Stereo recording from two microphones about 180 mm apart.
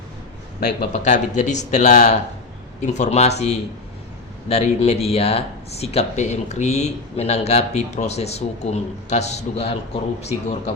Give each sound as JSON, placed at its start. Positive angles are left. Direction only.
{"t": 1.0, "sound": "speech", "side_deg": 40}